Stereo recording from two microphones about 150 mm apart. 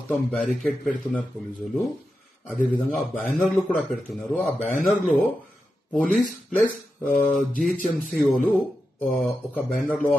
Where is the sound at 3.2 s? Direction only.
Centre (ahead or behind).